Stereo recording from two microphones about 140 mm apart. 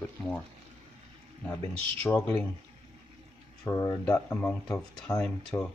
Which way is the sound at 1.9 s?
15° left (ahead or behind).